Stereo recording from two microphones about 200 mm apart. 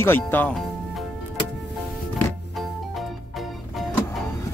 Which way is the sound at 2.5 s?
Centre (ahead or behind).